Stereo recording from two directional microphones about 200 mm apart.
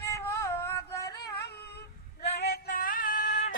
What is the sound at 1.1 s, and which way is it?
Female singing, 55° left (ahead or behind).